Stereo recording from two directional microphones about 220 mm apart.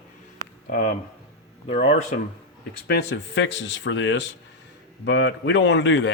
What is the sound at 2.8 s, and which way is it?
Speech, 50° left (ahead or behind).